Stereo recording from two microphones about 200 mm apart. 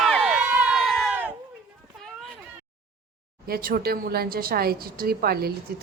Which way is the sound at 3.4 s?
50° right (ahead or behind).